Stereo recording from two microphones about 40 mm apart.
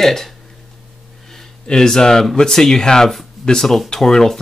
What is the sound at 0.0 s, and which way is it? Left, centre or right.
Speech, centre.